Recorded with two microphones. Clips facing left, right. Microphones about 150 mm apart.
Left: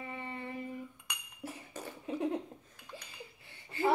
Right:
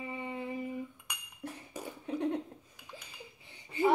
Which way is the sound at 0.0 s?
10° right (ahead or behind).